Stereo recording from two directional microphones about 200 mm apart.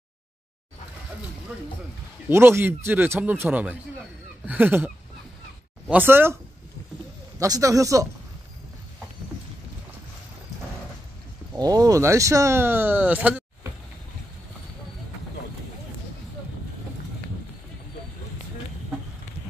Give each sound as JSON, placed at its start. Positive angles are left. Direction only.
{"t": 2.2, "sound": "speech", "side_deg": -10}
{"t": 7.3, "sound": "speech", "side_deg": -15}
{"t": 11.5, "sound": "speech", "side_deg": -20}